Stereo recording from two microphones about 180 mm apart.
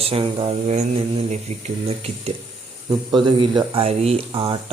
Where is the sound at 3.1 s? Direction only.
25° right (ahead or behind).